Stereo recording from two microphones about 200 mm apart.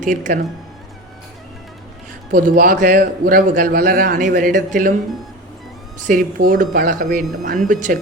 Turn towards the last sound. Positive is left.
turn(degrees=-40)  # may be behind; listen again after turning